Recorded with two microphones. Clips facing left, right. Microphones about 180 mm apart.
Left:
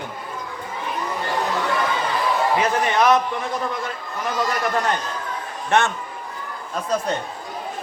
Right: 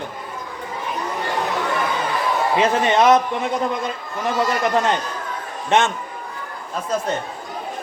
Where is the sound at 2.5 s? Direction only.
25° right (ahead or behind).